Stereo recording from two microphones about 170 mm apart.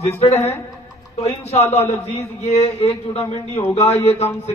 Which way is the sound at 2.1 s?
40° left (ahead or behind).